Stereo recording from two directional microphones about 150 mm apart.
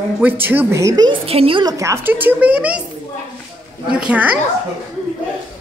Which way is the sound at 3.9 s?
5° right (ahead or behind).